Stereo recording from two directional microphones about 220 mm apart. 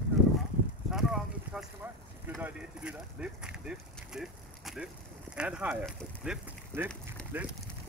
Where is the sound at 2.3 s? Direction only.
5° right (ahead or behind).